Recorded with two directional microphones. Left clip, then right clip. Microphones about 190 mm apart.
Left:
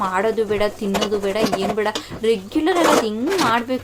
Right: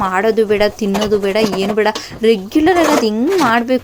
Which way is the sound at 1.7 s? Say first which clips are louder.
Right 7 dB; 25° right (ahead or behind).